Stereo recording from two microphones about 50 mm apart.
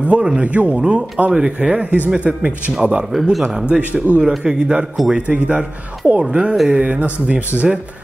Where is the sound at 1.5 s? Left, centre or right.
Right.